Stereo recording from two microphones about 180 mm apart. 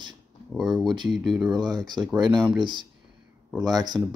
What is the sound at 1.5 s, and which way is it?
Speech, 20° right (ahead or behind).